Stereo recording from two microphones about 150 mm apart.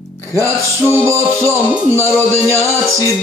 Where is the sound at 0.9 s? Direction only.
15° right (ahead or behind).